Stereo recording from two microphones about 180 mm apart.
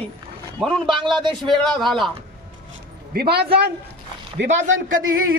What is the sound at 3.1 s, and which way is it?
Speech, 60° right (ahead or behind).